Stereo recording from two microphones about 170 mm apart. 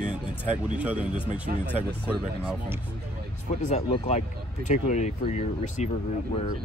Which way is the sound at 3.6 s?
40° left (ahead or behind).